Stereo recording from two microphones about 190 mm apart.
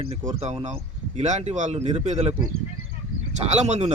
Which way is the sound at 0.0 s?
30° right (ahead or behind).